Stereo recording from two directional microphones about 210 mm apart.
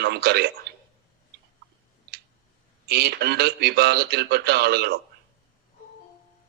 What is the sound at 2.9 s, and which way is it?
A man's voice, 50° right (ahead or behind).